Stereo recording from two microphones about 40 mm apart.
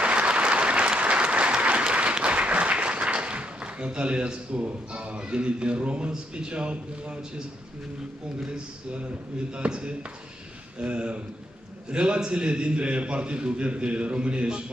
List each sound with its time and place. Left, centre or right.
0.0 s applause: right
9.5 s a man's voice: right